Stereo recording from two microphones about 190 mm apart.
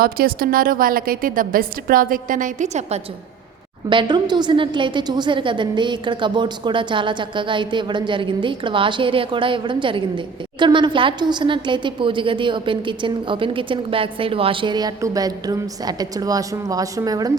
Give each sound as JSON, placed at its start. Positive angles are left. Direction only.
{"t": 0.0, "sound": "a woman's voice", "side_deg": -50}
{"t": 3.8, "sound": "a woman's voice", "side_deg": -25}